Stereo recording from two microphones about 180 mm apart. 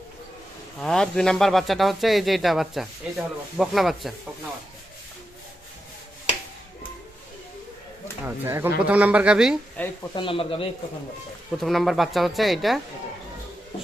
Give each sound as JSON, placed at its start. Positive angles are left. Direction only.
{"t": 0.8, "sound": "speech", "side_deg": 5}
{"t": 8.2, "sound": "speech", "side_deg": -15}
{"t": 9.7, "sound": "speech", "side_deg": 10}
{"t": 10.2, "sound": "speech", "side_deg": 30}
{"t": 11.5, "sound": "speech", "side_deg": 0}